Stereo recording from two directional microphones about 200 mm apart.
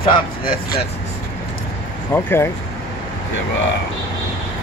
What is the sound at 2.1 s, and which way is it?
Speech, 10° left (ahead or behind).